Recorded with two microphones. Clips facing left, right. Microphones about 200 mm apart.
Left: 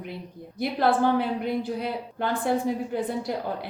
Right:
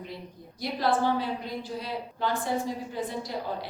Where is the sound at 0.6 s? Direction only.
60° left (ahead or behind).